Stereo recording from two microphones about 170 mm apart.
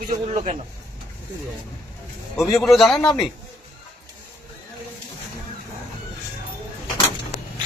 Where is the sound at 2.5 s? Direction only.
Centre (ahead or behind).